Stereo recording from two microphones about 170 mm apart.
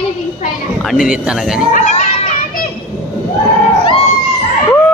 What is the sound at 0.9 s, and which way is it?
Speech, 5° right (ahead or behind).